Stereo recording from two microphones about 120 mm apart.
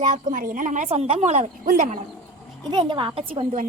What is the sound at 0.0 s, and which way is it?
A woman's voice, 85° right.